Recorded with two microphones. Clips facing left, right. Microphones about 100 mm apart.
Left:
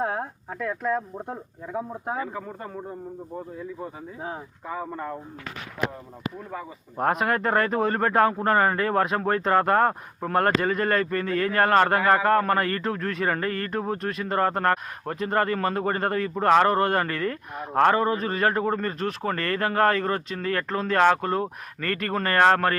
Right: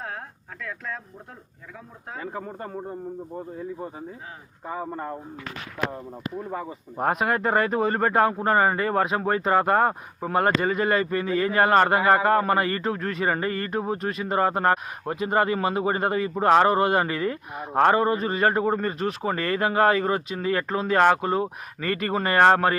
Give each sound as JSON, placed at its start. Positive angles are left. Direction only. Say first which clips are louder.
{"t": 0.6, "sound": "speech", "louder": "left 9 dB", "side_deg": 20}
{"t": 4.7, "sound": "speech", "louder": "right 1 dB", "side_deg": -30}
{"t": 6.9, "sound": "a man's voice", "louder": "even", "side_deg": 0}